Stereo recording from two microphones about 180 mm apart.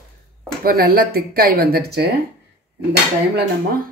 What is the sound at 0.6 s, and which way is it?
Speech, 55° right (ahead or behind).